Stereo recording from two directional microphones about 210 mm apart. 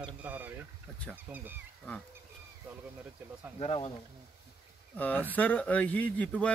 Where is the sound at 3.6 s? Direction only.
30° left (ahead or behind).